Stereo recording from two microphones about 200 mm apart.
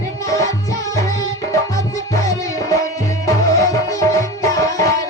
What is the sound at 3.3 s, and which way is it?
Music, 15° left (ahead or behind).